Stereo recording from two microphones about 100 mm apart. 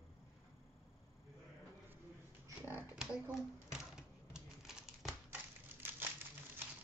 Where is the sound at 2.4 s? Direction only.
20° right (ahead or behind).